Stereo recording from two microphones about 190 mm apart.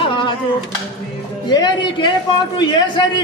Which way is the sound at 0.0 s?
25° left (ahead or behind).